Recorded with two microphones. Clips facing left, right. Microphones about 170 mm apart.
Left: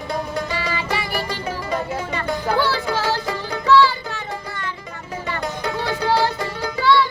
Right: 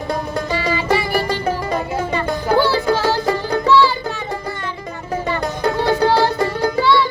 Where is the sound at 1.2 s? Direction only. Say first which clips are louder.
Right 7 dB; 55° right (ahead or behind).